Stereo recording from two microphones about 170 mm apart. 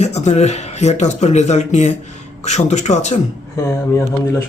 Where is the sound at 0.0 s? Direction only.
40° left (ahead or behind).